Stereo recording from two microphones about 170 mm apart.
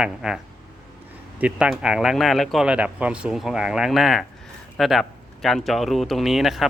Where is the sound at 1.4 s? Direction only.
5° right (ahead or behind).